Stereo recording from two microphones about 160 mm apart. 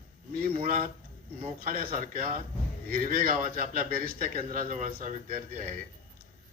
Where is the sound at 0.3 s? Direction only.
65° right (ahead or behind).